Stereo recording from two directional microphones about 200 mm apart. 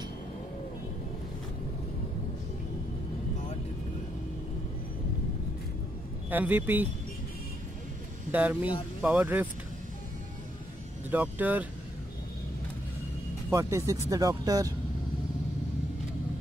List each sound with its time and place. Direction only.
6.3 s speech: 10° right (ahead or behind)
8.3 s speech: 10° right (ahead or behind)
11.1 s speech: 10° right (ahead or behind)
13.5 s speech: 15° right (ahead or behind)